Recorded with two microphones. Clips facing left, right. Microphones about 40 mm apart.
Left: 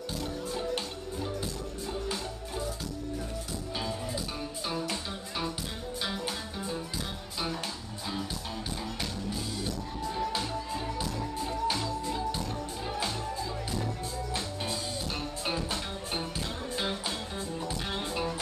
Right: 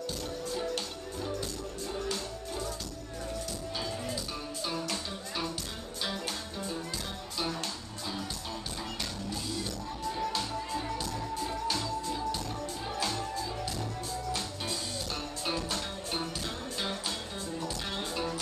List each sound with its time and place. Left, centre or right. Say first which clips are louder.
3.7 s music: left 2 dB; centre
6.0 s music: even; centre
10.1 s music: left 2 dB; centre
15.4 s music: even; centre
17.6 s music: left 1 dB; centre